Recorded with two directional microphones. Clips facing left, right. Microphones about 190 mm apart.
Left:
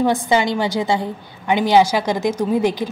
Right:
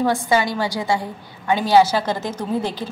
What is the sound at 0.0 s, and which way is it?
A woman's voice, 20° left (ahead or behind).